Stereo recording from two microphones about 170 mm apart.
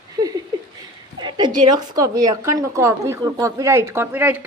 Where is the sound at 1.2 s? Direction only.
25° right (ahead or behind).